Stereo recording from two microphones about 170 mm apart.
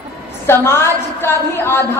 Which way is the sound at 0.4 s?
15° left (ahead or behind).